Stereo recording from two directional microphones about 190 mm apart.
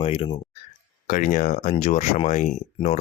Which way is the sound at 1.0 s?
45° left (ahead or behind).